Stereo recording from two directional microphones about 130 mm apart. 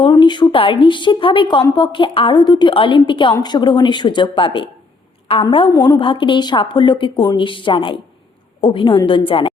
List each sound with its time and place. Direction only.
0.0 s a woman's voice: 35° left (ahead or behind)